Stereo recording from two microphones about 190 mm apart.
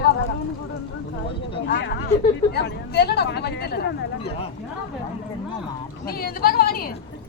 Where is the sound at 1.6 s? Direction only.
60° left (ahead or behind).